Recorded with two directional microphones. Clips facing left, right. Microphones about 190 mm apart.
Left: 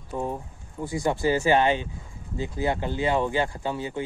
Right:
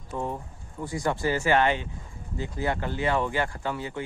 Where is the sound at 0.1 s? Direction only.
15° left (ahead or behind).